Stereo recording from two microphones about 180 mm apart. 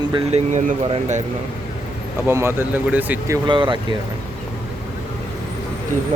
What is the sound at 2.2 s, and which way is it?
Speech, 15° right (ahead or behind).